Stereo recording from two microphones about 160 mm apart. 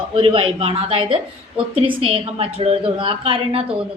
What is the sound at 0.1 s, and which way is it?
A woman's voice, 35° right (ahead or behind).